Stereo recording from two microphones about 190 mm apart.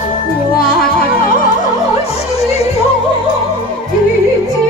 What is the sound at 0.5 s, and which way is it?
Music, 50° left (ahead or behind).